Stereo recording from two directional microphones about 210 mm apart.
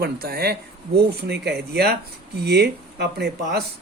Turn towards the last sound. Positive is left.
turn(degrees=-50)  # may be behind; listen again after turning